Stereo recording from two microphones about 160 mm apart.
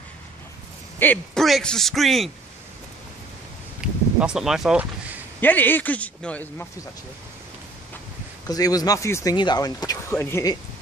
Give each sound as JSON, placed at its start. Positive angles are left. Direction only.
{"t": 0.9, "sound": "speech", "side_deg": 10}
{"t": 3.8, "sound": "a sound", "side_deg": -5}
{"t": 5.4, "sound": "a man's voice", "side_deg": 10}
{"t": 8.5, "sound": "speech", "side_deg": 25}